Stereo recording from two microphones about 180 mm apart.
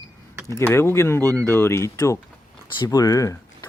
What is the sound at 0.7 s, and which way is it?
Speech, 15° left (ahead or behind).